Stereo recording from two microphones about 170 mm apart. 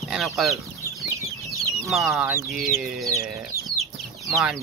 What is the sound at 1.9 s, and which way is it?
Speech, centre (ahead or behind).